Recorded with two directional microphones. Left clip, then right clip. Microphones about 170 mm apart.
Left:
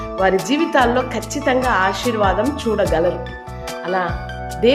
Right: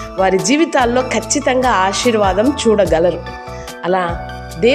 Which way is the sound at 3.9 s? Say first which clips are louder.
Right 5 dB; 50° right (ahead or behind).